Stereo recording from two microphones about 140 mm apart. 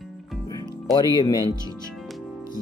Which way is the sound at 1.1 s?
25° left (ahead or behind).